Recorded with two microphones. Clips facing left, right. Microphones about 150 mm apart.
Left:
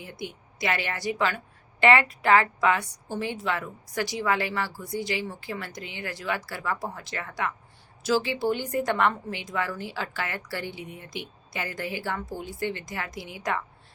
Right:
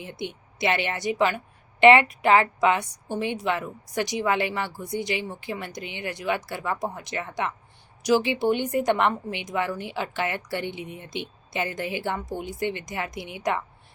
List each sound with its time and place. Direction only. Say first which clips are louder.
0.0 s a woman's voice: right 3 dB; 20° right (ahead or behind)